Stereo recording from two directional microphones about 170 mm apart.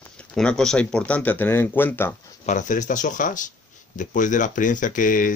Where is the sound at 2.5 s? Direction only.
45° left (ahead or behind).